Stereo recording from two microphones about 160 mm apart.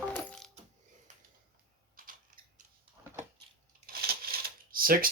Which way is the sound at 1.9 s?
60° right (ahead or behind).